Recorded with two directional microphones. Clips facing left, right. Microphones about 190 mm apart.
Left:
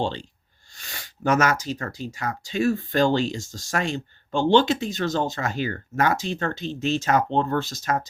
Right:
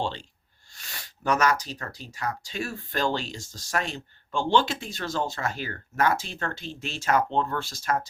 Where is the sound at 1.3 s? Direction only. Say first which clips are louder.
Left 3 dB; 25° left (ahead or behind).